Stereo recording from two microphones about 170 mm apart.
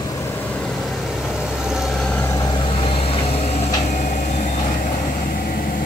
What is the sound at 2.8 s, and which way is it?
Vehicle, 35° left (ahead or behind).